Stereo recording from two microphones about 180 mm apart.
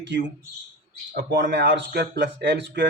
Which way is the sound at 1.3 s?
75° right (ahead or behind).